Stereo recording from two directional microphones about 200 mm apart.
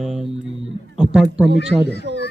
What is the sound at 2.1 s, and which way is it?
Speech, 65° right (ahead or behind).